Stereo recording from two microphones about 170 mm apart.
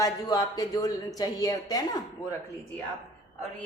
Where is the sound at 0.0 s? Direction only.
20° left (ahead or behind).